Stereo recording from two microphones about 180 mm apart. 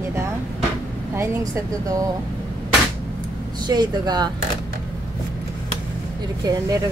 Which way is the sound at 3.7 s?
25° right (ahead or behind).